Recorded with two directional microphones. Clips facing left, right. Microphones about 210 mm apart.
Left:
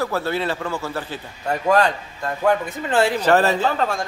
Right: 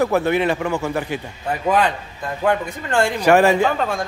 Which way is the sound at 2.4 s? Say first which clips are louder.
Even; 5° left (ahead or behind).